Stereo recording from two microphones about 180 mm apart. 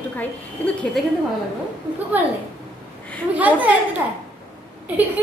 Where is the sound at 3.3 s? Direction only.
10° right (ahead or behind).